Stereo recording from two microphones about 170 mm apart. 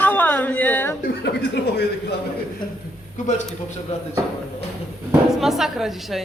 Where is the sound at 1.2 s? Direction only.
80° left.